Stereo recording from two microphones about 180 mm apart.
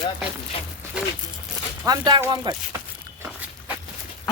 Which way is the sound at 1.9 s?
20° right (ahead or behind).